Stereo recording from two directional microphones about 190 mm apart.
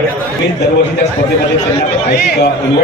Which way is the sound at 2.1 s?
55° left (ahead or behind).